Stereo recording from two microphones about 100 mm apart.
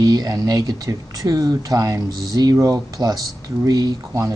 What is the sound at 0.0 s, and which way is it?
Speech, 40° right (ahead or behind).